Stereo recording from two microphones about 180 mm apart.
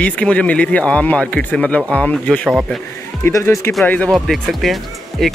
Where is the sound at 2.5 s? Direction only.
5° right (ahead or behind).